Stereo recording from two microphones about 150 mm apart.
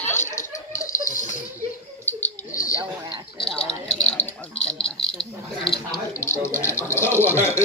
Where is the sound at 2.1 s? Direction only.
15° left (ahead or behind).